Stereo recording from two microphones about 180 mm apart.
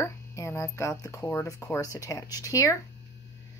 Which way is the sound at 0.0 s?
15° left (ahead or behind).